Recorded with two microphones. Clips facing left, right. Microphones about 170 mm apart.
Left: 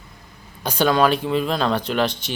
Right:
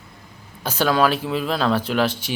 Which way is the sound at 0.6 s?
5° right (ahead or behind).